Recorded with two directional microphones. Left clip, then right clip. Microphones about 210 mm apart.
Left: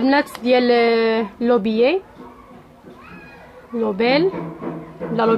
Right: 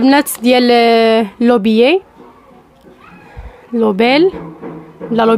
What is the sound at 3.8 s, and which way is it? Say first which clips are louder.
Speech: right 7 dB; 50° right (ahead or behind).